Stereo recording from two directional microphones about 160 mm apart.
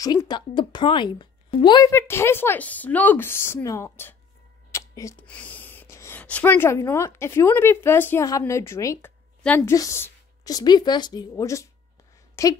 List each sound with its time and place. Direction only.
0.0 s a woman's voice: 25° left (ahead or behind)
1.9 s speech: 15° left (ahead or behind)
4.6 s a sound: 20° left (ahead or behind)
5.2 s a woman's voice: 10° left (ahead or behind)